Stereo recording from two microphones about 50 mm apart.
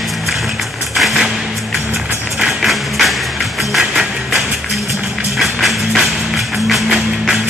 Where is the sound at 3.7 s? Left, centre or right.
Centre.